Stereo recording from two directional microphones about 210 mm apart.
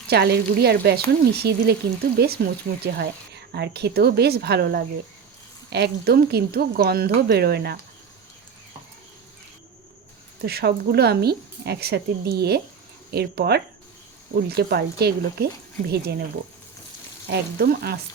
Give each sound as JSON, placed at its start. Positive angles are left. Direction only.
{"t": 0.1, "sound": "speech", "side_deg": -50}
{"t": 10.4, "sound": "speech", "side_deg": -50}